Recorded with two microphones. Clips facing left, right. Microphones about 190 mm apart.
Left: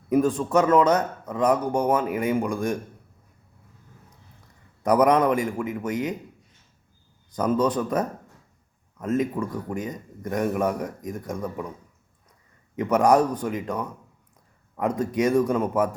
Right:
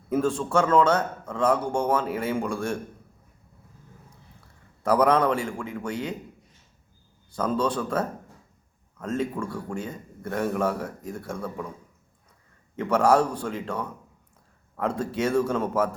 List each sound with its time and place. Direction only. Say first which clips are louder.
0.1 s a man's voice: left 3 dB; 15° left (ahead or behind)
4.8 s a man's voice: left 2 dB; 15° left (ahead or behind)
7.3 s a man's voice: left 3 dB; 15° left (ahead or behind)
12.7 s a man's voice: left 2 dB; 15° left (ahead or behind)